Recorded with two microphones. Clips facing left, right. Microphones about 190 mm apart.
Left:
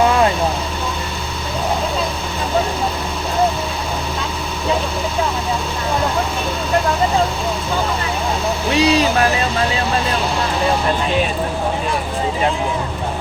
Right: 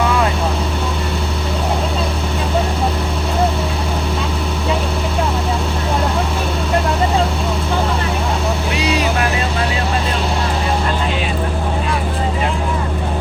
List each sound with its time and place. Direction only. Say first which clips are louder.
8.7 s vehicle: left 7 dB; 35° left (ahead or behind)